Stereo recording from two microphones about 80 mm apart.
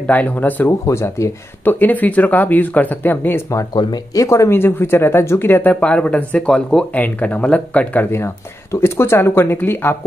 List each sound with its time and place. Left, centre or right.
0.0 s speech: left
0.7 s speech: left
1.6 s speech: left
3.7 s speech: left
4.2 s speech: left
4.5 s speech: left; by 6.9 s centre
6.9 s speech: centre
8.8 s speech: left